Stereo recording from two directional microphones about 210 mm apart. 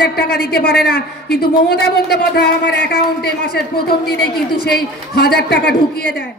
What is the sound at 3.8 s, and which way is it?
Speech, 50° left (ahead or behind).